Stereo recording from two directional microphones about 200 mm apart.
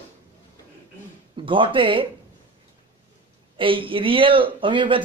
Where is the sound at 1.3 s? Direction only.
25° right (ahead or behind).